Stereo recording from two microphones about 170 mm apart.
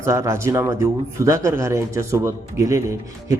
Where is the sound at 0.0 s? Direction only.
15° right (ahead or behind).